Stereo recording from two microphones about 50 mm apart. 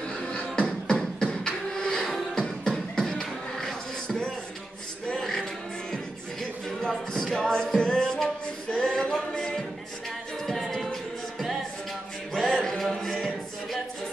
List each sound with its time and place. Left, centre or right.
0.3 s beatboxing: left; by 4.2 s centre
5.0 s music: centre
6.9 s a sound: centre
9.3 s a capella: centre
10.4 s music: centre
12.4 s a capella: centre